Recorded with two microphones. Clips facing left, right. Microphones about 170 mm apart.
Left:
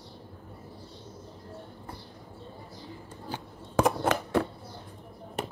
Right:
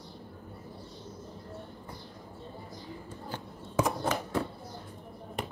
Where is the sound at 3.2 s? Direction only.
75° left (ahead or behind).